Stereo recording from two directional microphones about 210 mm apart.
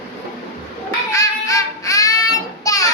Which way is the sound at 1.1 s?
15° left (ahead or behind).